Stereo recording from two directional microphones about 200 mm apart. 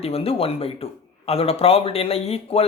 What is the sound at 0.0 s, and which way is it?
A man's voice, 30° left (ahead or behind).